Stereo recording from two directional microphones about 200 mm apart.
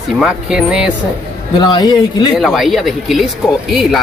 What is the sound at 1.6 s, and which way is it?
Speech, 20° left (ahead or behind).